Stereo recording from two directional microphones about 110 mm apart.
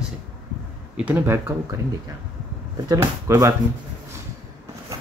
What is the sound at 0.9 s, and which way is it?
Speech, 15° right (ahead or behind).